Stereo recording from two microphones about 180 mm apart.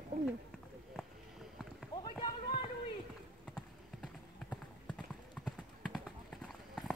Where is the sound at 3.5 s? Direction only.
5° left (ahead or behind).